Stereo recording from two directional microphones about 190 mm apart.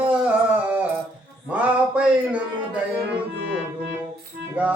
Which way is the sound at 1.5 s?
5° right (ahead or behind).